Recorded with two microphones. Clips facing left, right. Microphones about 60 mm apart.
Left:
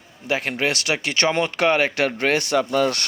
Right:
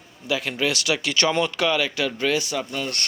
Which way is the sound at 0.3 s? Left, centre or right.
Left.